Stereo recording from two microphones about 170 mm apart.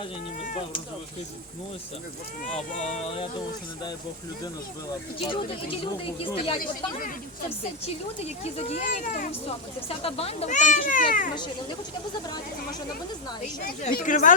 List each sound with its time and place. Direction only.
2.4 s speech: 45° left (ahead or behind)
5.2 s speech: 30° left (ahead or behind)
8.2 s speech: 40° left (ahead or behind)
10.0 s speech: 35° left (ahead or behind); by 11.3 s 50° left (ahead or behind)
13.9 s speech: 50° left (ahead or behind)